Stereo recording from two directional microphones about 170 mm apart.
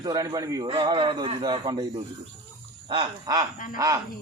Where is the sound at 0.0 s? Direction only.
20° right (ahead or behind).